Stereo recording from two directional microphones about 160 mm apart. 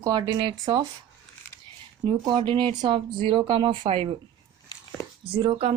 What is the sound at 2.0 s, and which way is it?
Speech, 30° right (ahead or behind).